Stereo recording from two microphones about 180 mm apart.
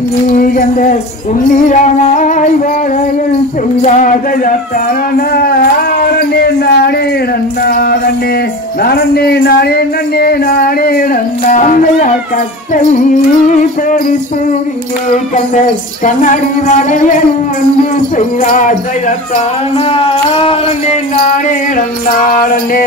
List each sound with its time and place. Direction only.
0.3 s music: 50° left (ahead or behind)
3.8 s music: 45° left (ahead or behind)
5.1 s a sound: 60° left (ahead or behind)
7.6 s speech: 55° left (ahead or behind)
11.5 s music: 45° left (ahead or behind)
15.3 s music: 40° left (ahead or behind)
19.9 s music: 30° left (ahead or behind)
21.3 s music: 50° left (ahead or behind)